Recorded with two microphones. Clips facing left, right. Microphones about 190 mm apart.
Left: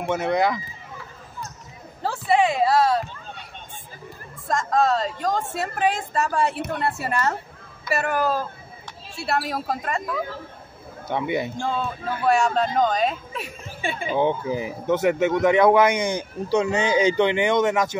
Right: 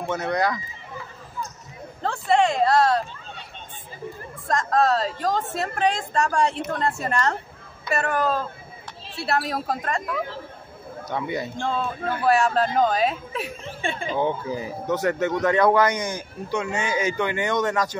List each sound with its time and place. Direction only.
0.0 s speech: 10° left (ahead or behind)
0.3 s speech: 20° left (ahead or behind)
2.0 s a woman's voice: 5° left (ahead or behind)
4.5 s a woman's voice: centre (ahead or behind)
11.1 s speech: 20° left (ahead or behind)
11.5 s a woman's voice: 5° left (ahead or behind)
14.1 s speech: 20° left (ahead or behind)
16.2 s speech: 30° left (ahead or behind)